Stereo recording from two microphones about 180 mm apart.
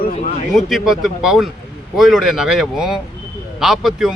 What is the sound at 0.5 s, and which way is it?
Speech, centre (ahead or behind).